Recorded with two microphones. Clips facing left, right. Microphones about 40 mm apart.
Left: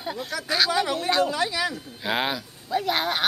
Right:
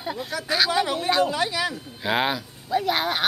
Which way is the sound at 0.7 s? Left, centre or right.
Right.